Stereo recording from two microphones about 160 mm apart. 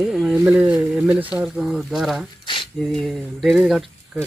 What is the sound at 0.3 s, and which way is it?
Speech, 10° right (ahead or behind).